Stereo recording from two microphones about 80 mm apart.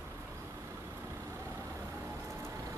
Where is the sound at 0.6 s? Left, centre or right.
Right.